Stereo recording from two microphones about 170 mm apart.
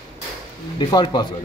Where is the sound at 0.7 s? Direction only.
25° left (ahead or behind).